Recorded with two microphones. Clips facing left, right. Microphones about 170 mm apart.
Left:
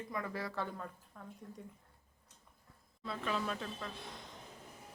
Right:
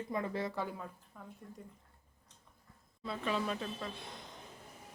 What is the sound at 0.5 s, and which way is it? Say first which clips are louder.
Speech: right 1 dB; 10° right (ahead or behind).